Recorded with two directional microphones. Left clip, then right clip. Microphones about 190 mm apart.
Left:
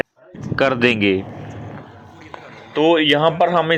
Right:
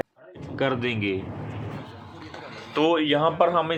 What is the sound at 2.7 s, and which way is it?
Speech, 15° left (ahead or behind).